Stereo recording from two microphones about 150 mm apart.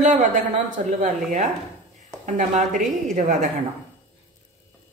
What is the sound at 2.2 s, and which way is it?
Speech, 55° right (ahead or behind).